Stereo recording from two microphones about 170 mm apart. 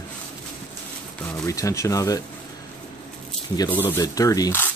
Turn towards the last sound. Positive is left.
turn(degrees=15)  # may be behind; listen again after turning